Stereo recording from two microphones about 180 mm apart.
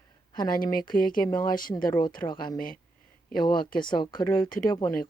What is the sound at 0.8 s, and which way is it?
Speech, 25° left (ahead or behind).